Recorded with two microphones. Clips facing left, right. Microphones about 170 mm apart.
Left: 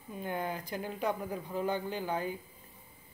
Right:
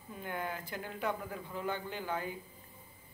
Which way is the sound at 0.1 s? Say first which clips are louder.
Left 4 dB; 20° left (ahead or behind).